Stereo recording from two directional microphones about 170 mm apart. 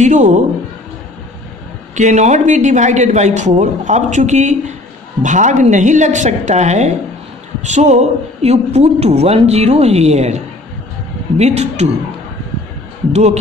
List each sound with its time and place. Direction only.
0.0 s speech: 45° right (ahead or behind)
2.0 s a man's voice: 45° right (ahead or behind)
13.1 s a man's voice: 40° right (ahead or behind)